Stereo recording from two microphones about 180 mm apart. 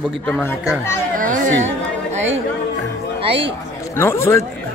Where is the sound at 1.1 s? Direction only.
45° right (ahead or behind).